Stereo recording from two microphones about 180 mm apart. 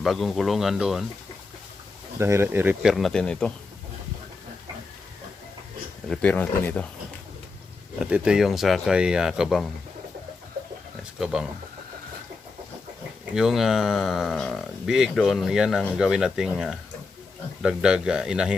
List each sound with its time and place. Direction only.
0.0 s speech: centre (ahead or behind)
2.1 s speech: 15° right (ahead or behind)
2.9 s speech: centre (ahead or behind)
6.1 s speech: 5° left (ahead or behind)
7.9 s speech: 5° right (ahead or behind)
11.2 s speech: centre (ahead or behind)
13.3 s speech: centre (ahead or behind)